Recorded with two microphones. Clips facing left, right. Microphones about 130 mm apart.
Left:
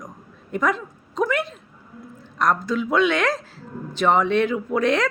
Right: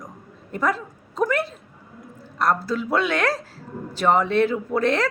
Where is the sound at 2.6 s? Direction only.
35° right (ahead or behind).